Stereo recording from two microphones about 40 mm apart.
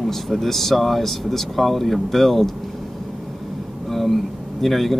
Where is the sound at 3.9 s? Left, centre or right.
Centre.